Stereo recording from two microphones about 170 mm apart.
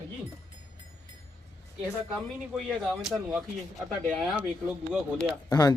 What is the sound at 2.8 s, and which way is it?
Speech, 5° right (ahead or behind).